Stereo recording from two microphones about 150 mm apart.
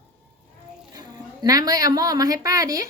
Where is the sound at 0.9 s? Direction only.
25° right (ahead or behind).